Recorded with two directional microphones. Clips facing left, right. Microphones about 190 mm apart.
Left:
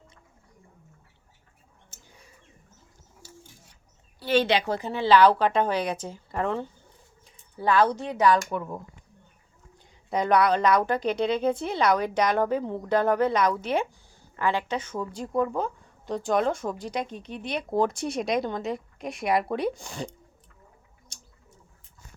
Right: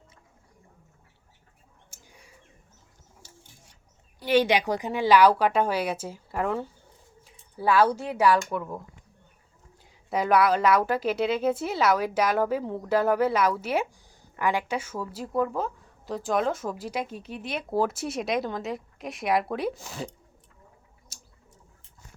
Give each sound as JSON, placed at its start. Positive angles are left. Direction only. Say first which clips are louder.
{"t": 1.9, "sound": "bird", "louder": "even", "side_deg": -10}
{"t": 4.2, "sound": "a woman's voice", "louder": "right 1 dB", "side_deg": -10}
{"t": 10.1, "sound": "speech", "louder": "even", "side_deg": -5}
{"t": 21.1, "sound": "a sound", "louder": "even", "side_deg": -5}